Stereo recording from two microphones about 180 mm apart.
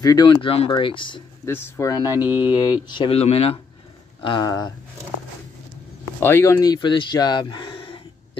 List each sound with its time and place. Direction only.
0.0 s speech: 20° left (ahead or behind)
1.4 s speech: 15° left (ahead or behind)
2.0 s mantra: 10° right (ahead or behind)
2.9 s speech: 30° left (ahead or behind)
6.1 s speech: 15° left (ahead or behind); by 8.0 s 30° left (ahead or behind)